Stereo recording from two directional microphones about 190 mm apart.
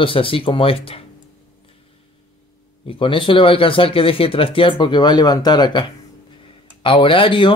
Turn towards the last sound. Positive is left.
turn(degrees=25)  # may be behind; listen again after turning